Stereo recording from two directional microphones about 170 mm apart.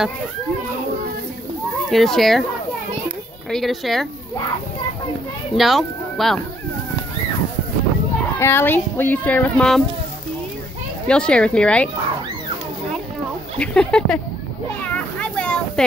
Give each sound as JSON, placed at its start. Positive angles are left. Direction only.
{"t": 1.9, "sound": "speech", "side_deg": 0}
{"t": 3.4, "sound": "speech", "side_deg": 0}
{"t": 5.6, "sound": "speech", "side_deg": 0}
{"t": 8.4, "sound": "a child's voice", "side_deg": 15}
{"t": 11.1, "sound": "speech", "side_deg": 5}
{"t": 13.6, "sound": "speech", "side_deg": 5}
{"t": 15.1, "sound": "a sound", "side_deg": 5}